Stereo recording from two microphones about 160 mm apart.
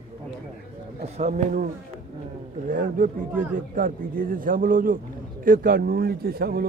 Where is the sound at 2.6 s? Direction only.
60° right (ahead or behind).